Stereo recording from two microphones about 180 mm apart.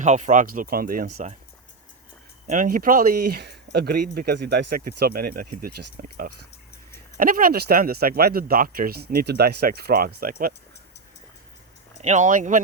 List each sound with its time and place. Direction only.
0.0 s speech: 40° right (ahead or behind)
2.5 s speech: 50° right (ahead or behind)
12.0 s speech: 45° right (ahead or behind)